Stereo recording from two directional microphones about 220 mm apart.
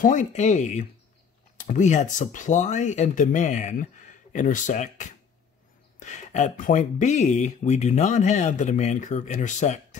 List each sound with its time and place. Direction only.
0.0 s speech: 35° left (ahead or behind)